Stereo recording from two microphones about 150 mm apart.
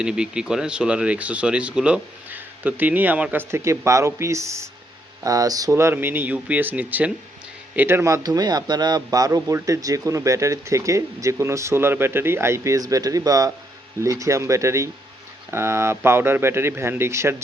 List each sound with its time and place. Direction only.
0.0 s a man's voice: 5° right (ahead or behind)